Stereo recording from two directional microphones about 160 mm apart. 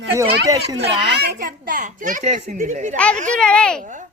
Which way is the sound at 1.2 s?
70° right (ahead or behind).